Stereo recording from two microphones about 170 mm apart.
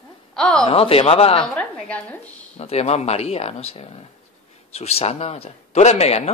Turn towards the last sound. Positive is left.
turn(degrees=40)  # may be behind; listen again after turning